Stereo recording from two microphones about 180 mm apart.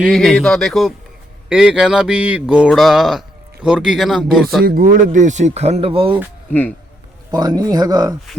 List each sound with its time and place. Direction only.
0.0 s mantra: centre (ahead or behind)
4.6 s speech: 55° right (ahead or behind); by 6.1 s 30° right (ahead or behind)
6.5 s speech: 10° left (ahead or behind)
7.3 s speech: 20° right (ahead or behind)